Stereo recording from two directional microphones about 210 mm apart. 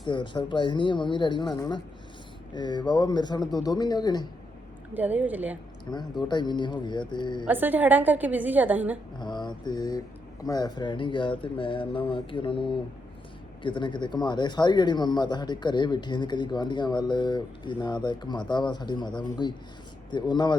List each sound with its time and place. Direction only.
0.0 s speech: 20° left (ahead or behind)
4.9 s a woman's voice: 5° right (ahead or behind)
5.9 s speech: 10° left (ahead or behind)
7.4 s a woman's voice: 10° right (ahead or behind)
9.1 s mantra: 20° left (ahead or behind)
10.4 s speech: 20° left (ahead or behind)